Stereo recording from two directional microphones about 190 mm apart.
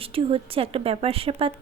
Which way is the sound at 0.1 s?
30° right (ahead or behind).